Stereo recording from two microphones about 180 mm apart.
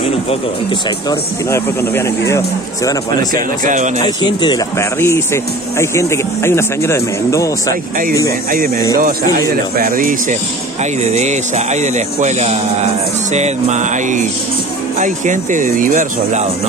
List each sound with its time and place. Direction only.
0.0 s speech: 35° left (ahead or behind)
1.5 s a man's voice: 15° left (ahead or behind)
3.6 s speech: 45° right (ahead or behind)
4.0 s a man's voice: 25° left (ahead or behind)
8.5 s speech: 50° right (ahead or behind)
10.8 s speech: 40° right (ahead or behind)